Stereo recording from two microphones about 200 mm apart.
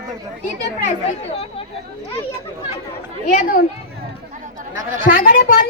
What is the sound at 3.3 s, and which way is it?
Speech, 40° left (ahead or behind).